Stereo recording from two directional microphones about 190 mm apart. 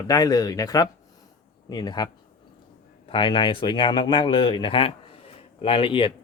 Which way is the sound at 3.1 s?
25° left (ahead or behind).